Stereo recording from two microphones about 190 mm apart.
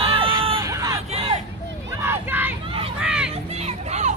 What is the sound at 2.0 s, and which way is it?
Crowd, 10° right (ahead or behind).